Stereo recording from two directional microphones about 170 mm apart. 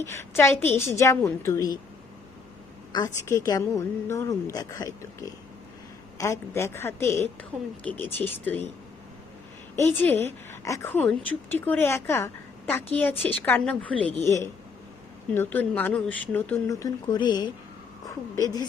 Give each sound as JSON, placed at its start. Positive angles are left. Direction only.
{"t": 0.0, "sound": "speech", "side_deg": 15}
{"t": 2.9, "sound": "a woman's voice", "side_deg": 20}
{"t": 6.1, "sound": "speech", "side_deg": 15}
{"t": 7.5, "sound": "speech", "side_deg": -5}
{"t": 7.9, "sound": "speech", "side_deg": 10}
{"t": 9.7, "sound": "speech", "side_deg": 15}
{"t": 15.4, "sound": "a woman's voice", "side_deg": 10}